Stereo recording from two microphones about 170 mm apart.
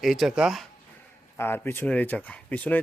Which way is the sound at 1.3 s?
15° left (ahead or behind).